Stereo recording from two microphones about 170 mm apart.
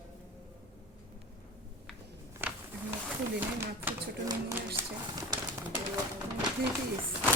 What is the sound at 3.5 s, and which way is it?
Speech, 15° right (ahead or behind).